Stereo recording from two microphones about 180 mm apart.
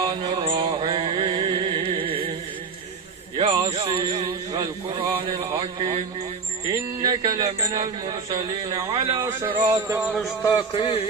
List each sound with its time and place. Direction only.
0.0 s mantra: 25° right (ahead or behind)
1.9 s music: 30° right (ahead or behind)
3.3 s a sound: 30° right (ahead or behind)
5.5 s a man's voice: 25° right (ahead or behind)
9.8 s speech: 10° right (ahead or behind)
10.4 s a man's voice: 30° left (ahead or behind)